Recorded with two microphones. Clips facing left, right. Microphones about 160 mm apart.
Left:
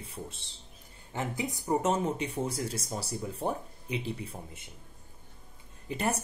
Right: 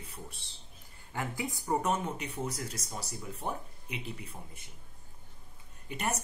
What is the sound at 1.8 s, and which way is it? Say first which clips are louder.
Speech: left 4 dB; 25° left (ahead or behind).